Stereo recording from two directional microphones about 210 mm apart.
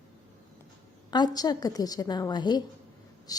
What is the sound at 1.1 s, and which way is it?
A woman's voice, 20° left (ahead or behind).